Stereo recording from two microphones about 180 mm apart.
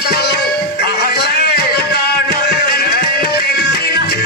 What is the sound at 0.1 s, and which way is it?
Music, 60° left (ahead or behind).